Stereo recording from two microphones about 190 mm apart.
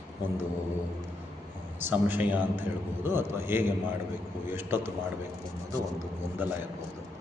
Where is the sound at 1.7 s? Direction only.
10° right (ahead or behind).